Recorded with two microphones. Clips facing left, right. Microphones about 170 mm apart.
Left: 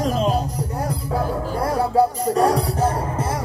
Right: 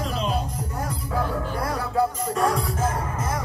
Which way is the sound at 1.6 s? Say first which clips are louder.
Left 7 dB; 30° left (ahead or behind).